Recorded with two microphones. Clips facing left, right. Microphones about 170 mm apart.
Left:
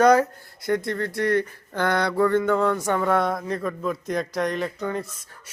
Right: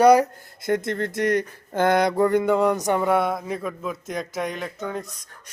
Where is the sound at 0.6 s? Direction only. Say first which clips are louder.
Right 1 dB; 20° right (ahead or behind).